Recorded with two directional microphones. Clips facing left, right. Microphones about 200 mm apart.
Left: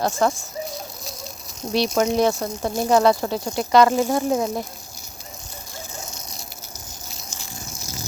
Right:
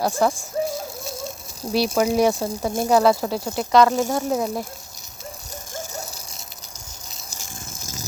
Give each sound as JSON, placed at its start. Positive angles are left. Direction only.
{"t": 0.0, "sound": "speech", "side_deg": -10}
{"t": 0.3, "sound": "a sound", "side_deg": -25}
{"t": 2.0, "sound": "speech", "side_deg": -10}
{"t": 7.3, "sound": "vehicle", "side_deg": -45}